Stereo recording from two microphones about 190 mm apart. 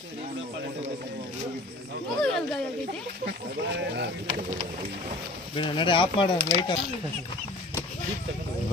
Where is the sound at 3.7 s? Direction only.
65° right (ahead or behind).